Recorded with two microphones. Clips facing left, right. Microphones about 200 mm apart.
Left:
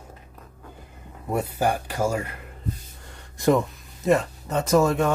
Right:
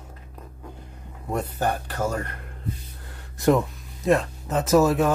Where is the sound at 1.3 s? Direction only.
10° left (ahead or behind).